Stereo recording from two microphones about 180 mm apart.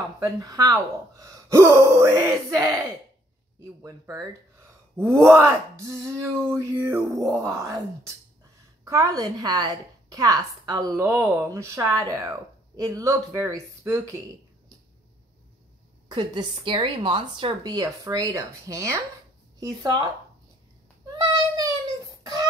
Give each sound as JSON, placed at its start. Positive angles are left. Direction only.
{"t": 0.2, "sound": "a woman's voice", "side_deg": -20}
{"t": 3.8, "sound": "speech", "side_deg": -20}
{"t": 8.8, "sound": "a woman's voice", "side_deg": -20}
{"t": 16.1, "sound": "a woman's voice", "side_deg": -25}
{"t": 21.2, "sound": "a sound", "side_deg": -20}